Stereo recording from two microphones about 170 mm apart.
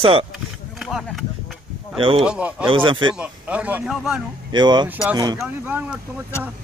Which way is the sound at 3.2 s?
10° right (ahead or behind).